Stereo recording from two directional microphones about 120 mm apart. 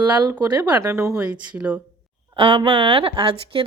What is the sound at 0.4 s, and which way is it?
Speech, 15° right (ahead or behind).